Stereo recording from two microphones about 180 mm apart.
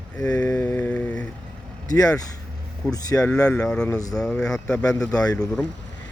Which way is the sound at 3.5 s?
5° left (ahead or behind).